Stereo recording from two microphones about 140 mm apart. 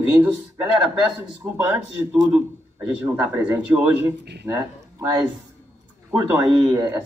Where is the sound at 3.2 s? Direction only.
10° right (ahead or behind).